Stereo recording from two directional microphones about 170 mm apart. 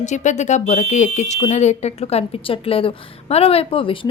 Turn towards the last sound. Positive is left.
turn(degrees=30)  # may be behind; listen again after turning